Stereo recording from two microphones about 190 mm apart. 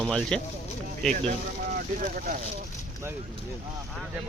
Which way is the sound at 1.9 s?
45° right (ahead or behind).